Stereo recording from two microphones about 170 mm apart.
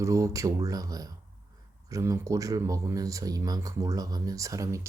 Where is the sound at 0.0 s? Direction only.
20° right (ahead or behind).